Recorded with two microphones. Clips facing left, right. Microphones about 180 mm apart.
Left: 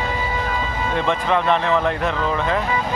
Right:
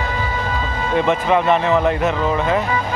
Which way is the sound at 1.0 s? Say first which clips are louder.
Right 4 dB; 5° right (ahead or behind).